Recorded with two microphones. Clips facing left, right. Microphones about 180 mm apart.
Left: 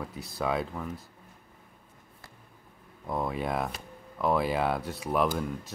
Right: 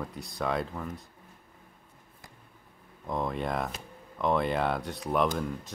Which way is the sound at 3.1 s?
5° left (ahead or behind).